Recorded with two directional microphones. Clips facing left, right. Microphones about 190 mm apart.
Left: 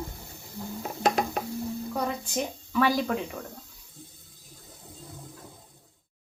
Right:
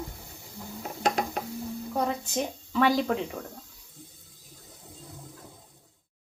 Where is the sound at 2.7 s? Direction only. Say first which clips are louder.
Right 1 dB; 25° right (ahead or behind).